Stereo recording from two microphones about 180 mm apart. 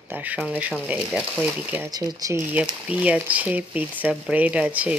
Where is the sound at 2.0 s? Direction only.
20° right (ahead or behind).